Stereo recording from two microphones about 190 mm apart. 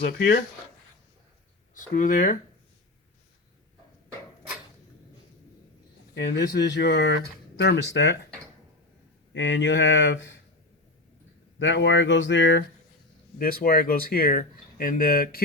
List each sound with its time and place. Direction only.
1.7 s speech: 45° left (ahead or behind)
6.3 s speech: 65° left (ahead or behind)
9.3 s speech: 70° left (ahead or behind)
11.6 s speech: 70° left (ahead or behind)
13.4 s speech: 50° left (ahead or behind)